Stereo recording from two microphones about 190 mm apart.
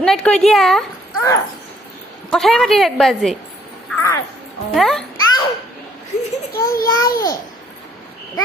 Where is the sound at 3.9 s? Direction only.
15° left (ahead or behind).